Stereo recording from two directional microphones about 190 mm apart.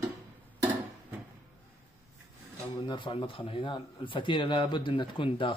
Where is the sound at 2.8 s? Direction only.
25° left (ahead or behind).